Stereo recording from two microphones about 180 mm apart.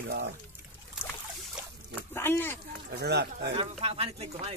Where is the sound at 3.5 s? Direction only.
35° right (ahead or behind).